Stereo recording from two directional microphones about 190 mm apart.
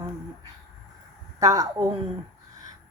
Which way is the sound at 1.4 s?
20° right (ahead or behind).